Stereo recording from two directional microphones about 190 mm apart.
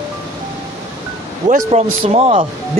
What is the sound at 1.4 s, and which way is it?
Speech, 40° right (ahead or behind).